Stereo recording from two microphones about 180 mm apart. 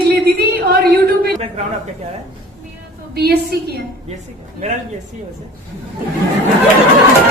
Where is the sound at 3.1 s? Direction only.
60° right (ahead or behind).